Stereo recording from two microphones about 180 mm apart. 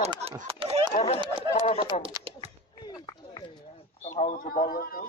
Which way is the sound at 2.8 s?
20° left (ahead or behind).